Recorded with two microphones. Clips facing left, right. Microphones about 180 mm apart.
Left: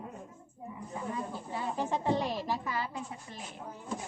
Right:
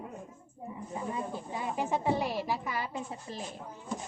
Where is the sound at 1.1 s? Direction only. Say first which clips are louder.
Even; 15° right (ahead or behind).